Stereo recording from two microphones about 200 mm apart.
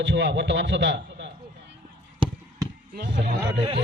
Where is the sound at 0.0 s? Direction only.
60° right (ahead or behind).